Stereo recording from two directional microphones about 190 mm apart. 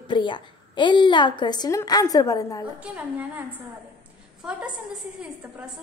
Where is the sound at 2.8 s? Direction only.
10° right (ahead or behind).